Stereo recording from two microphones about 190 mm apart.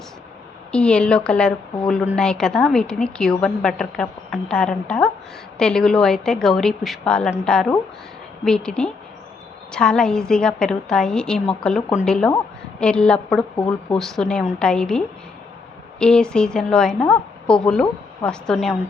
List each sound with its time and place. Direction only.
0.7 s a woman's voice: 5° left (ahead or behind)